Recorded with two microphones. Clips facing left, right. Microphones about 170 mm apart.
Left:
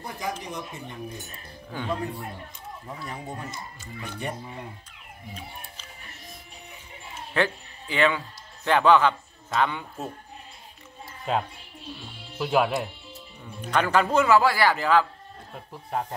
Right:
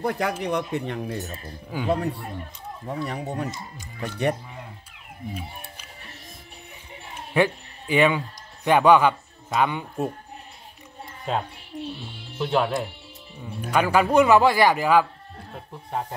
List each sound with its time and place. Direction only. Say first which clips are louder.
0.0 s speech: right 8 dB; 65° right (ahead or behind)
1.7 s a man's voice: right 4 dB; 10° right (ahead or behind)
2.9 s speech: right 8 dB; 70° right (ahead or behind)
7.3 s a man's voice: right 4 dB; 15° right (ahead or behind)
11.3 s speech: even; centre (ahead or behind)
13.7 s a man's voice: right 2 dB; 10° right (ahead or behind)
15.7 s speech: even; centre (ahead or behind)